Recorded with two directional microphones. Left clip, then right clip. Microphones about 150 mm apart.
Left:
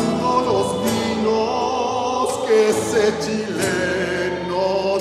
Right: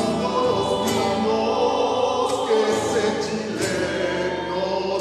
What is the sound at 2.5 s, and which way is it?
Music, 45° left (ahead or behind).